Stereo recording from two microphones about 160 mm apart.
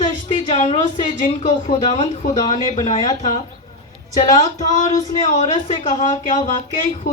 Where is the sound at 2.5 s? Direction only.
45° left (ahead or behind).